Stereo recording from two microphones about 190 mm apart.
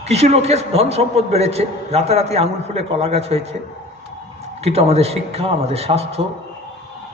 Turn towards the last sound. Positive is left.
turn(degrees=-30)  # may be behind; listen again after turning